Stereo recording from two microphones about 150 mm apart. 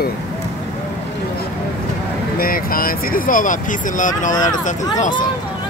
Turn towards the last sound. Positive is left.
turn(degrees=55)  # may be behind; listen again after turning